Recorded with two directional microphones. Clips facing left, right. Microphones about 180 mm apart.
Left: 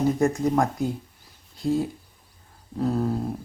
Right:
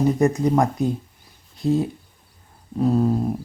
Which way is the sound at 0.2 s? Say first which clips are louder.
Right 3 dB; 20° right (ahead or behind).